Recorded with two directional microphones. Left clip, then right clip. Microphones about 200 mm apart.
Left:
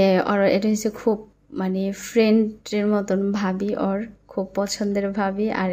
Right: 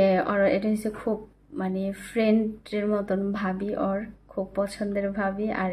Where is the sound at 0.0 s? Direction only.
25° left (ahead or behind).